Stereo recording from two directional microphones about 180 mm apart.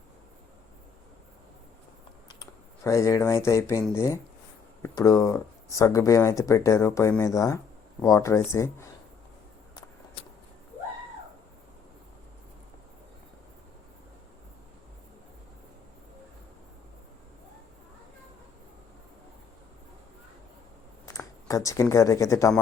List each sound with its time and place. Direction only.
2.4 s speech: 15° left (ahead or behind)
21.1 s speech: 15° left (ahead or behind)